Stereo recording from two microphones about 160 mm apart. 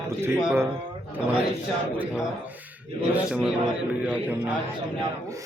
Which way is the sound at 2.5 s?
10° right (ahead or behind).